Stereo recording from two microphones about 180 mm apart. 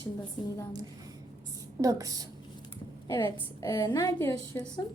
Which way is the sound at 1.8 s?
20° right (ahead or behind).